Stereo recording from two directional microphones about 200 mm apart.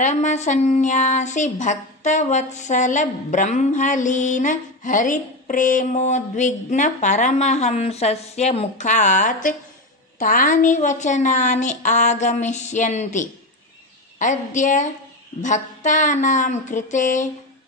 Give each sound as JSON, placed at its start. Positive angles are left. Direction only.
{"t": 0.0, "sound": "speech", "side_deg": 35}